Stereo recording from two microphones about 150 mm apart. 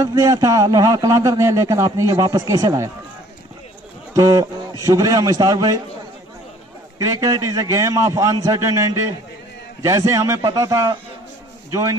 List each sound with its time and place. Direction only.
0.0 s a man's voice: 25° right (ahead or behind)
4.1 s a man's voice: 25° right (ahead or behind)
7.0 s a man's voice: 25° right (ahead or behind)